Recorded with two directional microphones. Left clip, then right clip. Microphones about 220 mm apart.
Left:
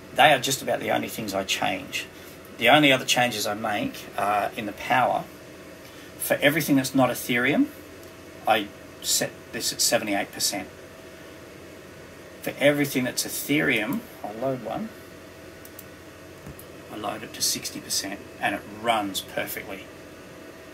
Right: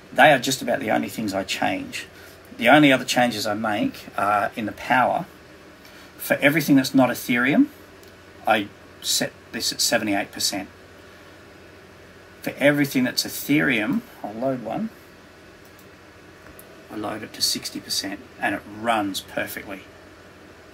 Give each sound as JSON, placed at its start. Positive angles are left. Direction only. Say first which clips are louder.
{"t": 0.1, "sound": "speech", "louder": "right 3 dB", "side_deg": -15}
{"t": 6.2, "sound": "speech", "louder": "right 2 dB", "side_deg": -15}
{"t": 12.4, "sound": "speech", "louder": "right 2 dB", "side_deg": -15}
{"t": 17.3, "sound": "speech", "louder": "right 3 dB", "side_deg": -10}